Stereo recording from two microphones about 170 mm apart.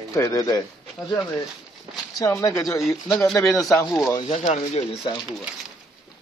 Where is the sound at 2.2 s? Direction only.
20° left (ahead or behind).